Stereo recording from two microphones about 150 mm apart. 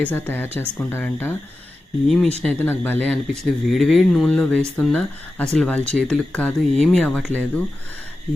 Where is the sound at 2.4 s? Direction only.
10° left (ahead or behind).